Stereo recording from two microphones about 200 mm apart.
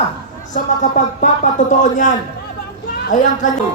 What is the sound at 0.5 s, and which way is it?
A man's voice, 40° left (ahead or behind).